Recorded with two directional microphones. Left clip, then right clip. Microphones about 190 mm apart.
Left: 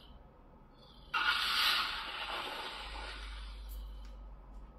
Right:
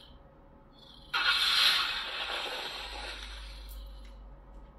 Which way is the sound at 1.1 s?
35° right (ahead or behind).